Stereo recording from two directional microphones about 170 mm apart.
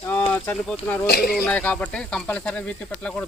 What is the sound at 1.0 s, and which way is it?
Speech, 65° left (ahead or behind).